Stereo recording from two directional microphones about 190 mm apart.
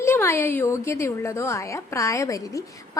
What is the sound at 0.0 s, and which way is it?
A woman's voice, 15° left (ahead or behind).